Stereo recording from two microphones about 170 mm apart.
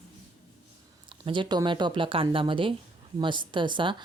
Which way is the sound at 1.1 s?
30° right (ahead or behind).